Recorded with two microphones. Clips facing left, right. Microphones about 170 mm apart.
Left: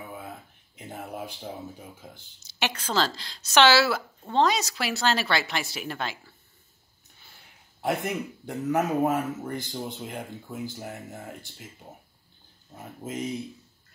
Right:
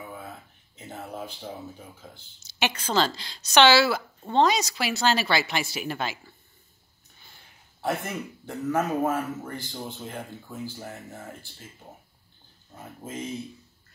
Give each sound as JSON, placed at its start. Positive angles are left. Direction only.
{"t": 0.7, "sound": "a sound", "side_deg": 15}
{"t": 2.4, "sound": "a woman's voice", "side_deg": 0}
{"t": 7.8, "sound": "speech", "side_deg": 15}
{"t": 12.7, "sound": "speech", "side_deg": 20}